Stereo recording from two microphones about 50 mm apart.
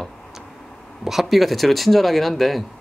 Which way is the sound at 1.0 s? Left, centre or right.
Centre.